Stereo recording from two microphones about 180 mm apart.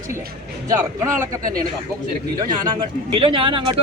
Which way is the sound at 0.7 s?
15° right (ahead or behind).